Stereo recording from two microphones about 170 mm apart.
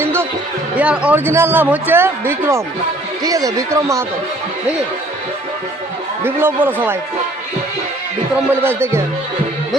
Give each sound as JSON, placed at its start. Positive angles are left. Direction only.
{"t": 0.0, "sound": "music", "side_deg": -15}
{"t": 0.8, "sound": "speech", "side_deg": -10}
{"t": 6.2, "sound": "speech", "side_deg": -10}
{"t": 8.6, "sound": "speech", "side_deg": -15}